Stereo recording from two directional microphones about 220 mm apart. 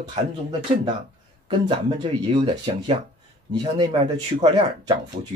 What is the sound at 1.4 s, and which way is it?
Speech, 25° right (ahead or behind).